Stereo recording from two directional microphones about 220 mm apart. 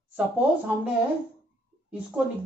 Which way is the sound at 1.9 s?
5° right (ahead or behind).